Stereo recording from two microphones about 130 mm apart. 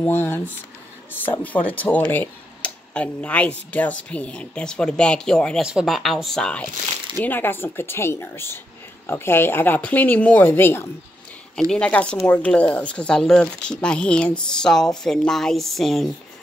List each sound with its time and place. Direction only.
0.0 s speech: 15° left (ahead or behind); by 16.1 s centre (ahead or behind)